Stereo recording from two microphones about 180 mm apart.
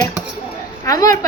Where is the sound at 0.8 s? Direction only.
20° left (ahead or behind).